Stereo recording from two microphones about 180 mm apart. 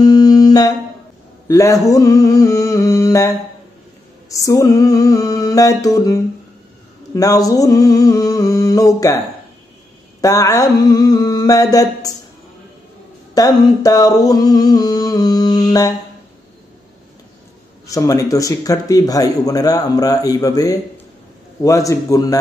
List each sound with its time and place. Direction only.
0.0 s guitar: 25° left (ahead or behind)
1.5 s speech: 20° left (ahead or behind)
1.9 s a sound: 20° left (ahead or behind)
4.3 s speech: 20° left (ahead or behind)
10.2 s speech: 20° left (ahead or behind)
13.3 s speech: 20° left (ahead or behind)
17.8 s speech: 20° left (ahead or behind)